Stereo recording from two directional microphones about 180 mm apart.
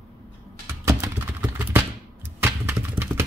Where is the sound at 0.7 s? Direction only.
15° right (ahead or behind).